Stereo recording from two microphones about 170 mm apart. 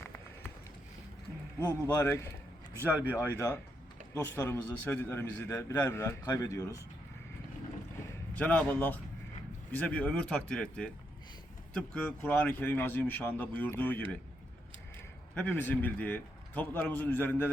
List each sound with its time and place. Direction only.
1.6 s a man's voice: 15° left (ahead or behind)
2.7 s speech: 10° right (ahead or behind)
3.2 s a man's voice: 15° left (ahead or behind)
8.4 s a man's voice: 5° left (ahead or behind)
15.4 s a man's voice: 10° left (ahead or behind)